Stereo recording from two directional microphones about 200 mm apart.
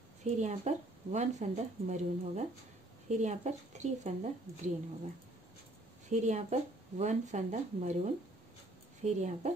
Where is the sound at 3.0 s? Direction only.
35° right (ahead or behind).